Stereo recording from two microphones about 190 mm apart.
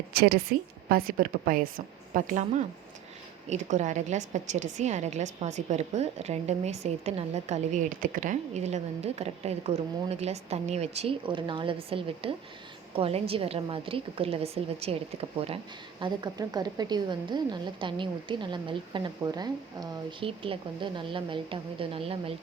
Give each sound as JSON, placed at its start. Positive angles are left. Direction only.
{"t": 0.1, "sound": "a woman's voice", "side_deg": -55}